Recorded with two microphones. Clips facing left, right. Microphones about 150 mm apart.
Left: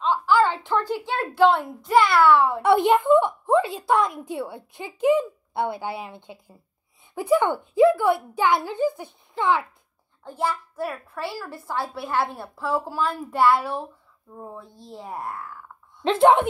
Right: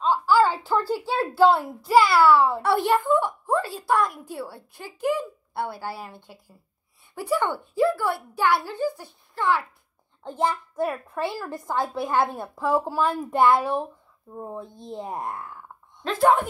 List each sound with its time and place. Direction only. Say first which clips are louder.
0.0 s a sound: even; 10° right (ahead or behind)
1.0 s a child's voice: even; 5° right (ahead or behind)
2.6 s speech: left 4 dB; 15° left (ahead or behind)
10.4 s a child's voice: right 2 dB; 20° right (ahead or behind)
13.1 s a child's voice: right 4 dB; 45° right (ahead or behind)
13.4 s a child's voice: right 1 dB; 15° right (ahead or behind)
16.0 s speech: left 3 dB; 25° left (ahead or behind)